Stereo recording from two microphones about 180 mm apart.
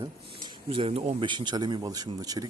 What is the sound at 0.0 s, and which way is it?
Speech, 25° right (ahead or behind).